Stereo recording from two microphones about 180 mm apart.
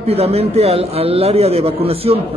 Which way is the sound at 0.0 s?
35° right (ahead or behind).